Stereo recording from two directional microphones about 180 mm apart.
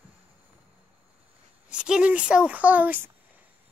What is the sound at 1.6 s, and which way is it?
Speech, 5° right (ahead or behind).